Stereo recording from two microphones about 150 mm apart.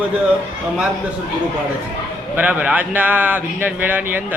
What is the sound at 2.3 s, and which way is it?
Speech, 10° right (ahead or behind).